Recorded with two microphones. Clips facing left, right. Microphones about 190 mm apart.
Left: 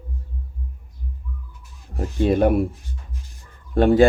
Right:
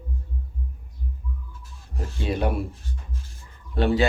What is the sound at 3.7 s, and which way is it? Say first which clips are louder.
Speech: left 7 dB; 50° left (ahead or behind).